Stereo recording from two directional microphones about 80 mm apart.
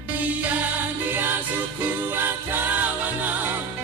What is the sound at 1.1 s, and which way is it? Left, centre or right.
Music, right.